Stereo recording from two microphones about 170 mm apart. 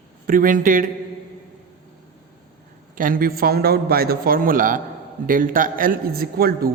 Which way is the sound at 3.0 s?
55° right (ahead or behind).